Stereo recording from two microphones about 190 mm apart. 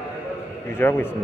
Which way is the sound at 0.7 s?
10° left (ahead or behind).